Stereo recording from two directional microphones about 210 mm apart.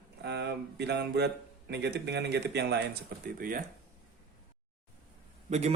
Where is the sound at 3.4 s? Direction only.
40° right (ahead or behind).